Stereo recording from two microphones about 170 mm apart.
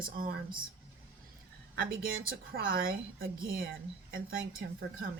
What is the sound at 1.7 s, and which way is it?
A woman's voice, 60° right (ahead or behind).